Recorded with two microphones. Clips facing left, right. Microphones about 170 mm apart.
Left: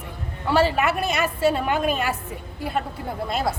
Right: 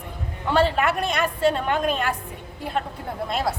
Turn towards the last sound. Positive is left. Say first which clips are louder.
# even
turn(degrees=0)  # may be behind; listen again after turning